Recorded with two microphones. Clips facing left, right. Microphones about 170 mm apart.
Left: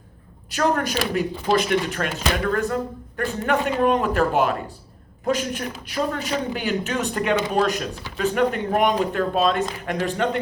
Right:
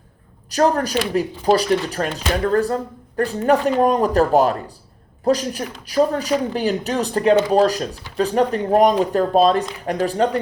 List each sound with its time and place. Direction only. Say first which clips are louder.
0.5 s speech: right 4 dB; 35° right (ahead or behind)